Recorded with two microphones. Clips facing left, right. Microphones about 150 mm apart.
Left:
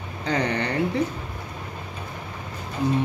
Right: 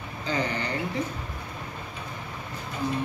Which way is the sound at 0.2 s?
65° left (ahead or behind).